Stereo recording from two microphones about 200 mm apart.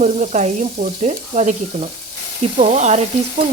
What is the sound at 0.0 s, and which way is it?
A woman's voice, 35° right (ahead or behind).